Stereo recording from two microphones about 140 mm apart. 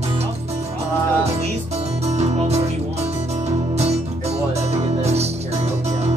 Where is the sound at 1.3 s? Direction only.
50° right (ahead or behind).